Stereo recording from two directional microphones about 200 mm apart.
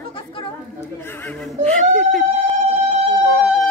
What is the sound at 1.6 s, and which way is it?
Speech, 5° left (ahead or behind).